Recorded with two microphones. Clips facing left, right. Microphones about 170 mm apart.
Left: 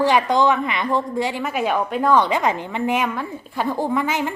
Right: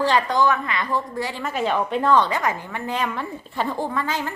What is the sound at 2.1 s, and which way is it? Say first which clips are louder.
Speech: left 3 dB; 15° left (ahead or behind).